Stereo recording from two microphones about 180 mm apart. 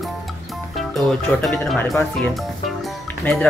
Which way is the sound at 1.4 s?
5° left (ahead or behind).